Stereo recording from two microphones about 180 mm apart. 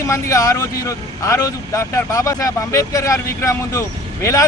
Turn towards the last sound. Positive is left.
turn(degrees=15)  # may be behind; listen again after turning